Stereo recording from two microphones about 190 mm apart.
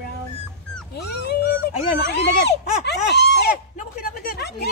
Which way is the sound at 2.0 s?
65° left (ahead or behind).